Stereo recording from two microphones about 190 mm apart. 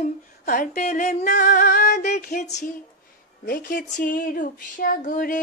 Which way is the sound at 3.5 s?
50° left (ahead or behind).